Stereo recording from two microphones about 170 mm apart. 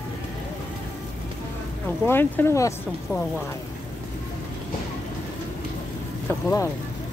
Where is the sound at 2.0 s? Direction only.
15° left (ahead or behind).